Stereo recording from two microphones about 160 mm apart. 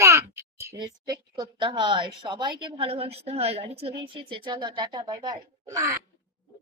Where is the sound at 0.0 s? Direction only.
15° right (ahead or behind).